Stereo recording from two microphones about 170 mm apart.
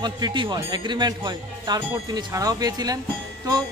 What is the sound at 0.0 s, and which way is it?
Speech, 25° right (ahead or behind).